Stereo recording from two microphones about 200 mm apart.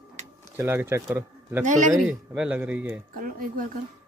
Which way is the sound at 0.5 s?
10° right (ahead or behind).